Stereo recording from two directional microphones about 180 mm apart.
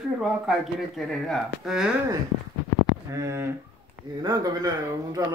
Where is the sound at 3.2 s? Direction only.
15° right (ahead or behind).